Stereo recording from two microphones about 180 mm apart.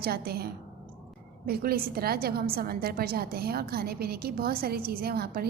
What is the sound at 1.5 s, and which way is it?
A woman's voice, 55° right (ahead or behind).